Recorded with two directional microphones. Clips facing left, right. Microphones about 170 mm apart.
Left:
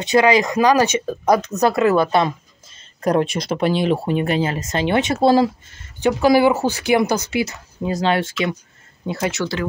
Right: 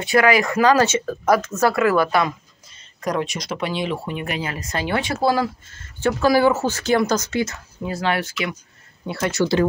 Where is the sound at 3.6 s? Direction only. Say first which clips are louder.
Left 7 dB; 40° left (ahead or behind); by 9.3 s 20° left (ahead or behind).